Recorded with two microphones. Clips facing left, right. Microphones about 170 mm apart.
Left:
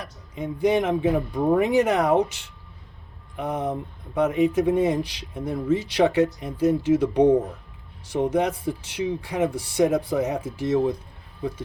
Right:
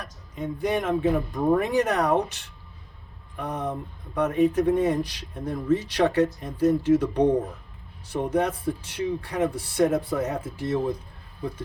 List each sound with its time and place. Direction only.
0.0 s speech: 15° left (ahead or behind)
3.3 s speech: 10° left (ahead or behind)